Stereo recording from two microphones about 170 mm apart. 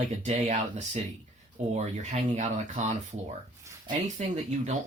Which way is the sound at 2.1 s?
45° right (ahead or behind).